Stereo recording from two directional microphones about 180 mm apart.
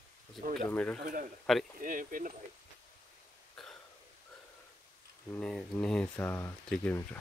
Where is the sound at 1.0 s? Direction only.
50° right (ahead or behind).